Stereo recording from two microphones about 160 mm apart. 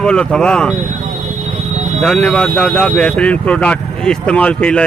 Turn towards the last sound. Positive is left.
turn(degrees=5)  # may be behind; listen again after turning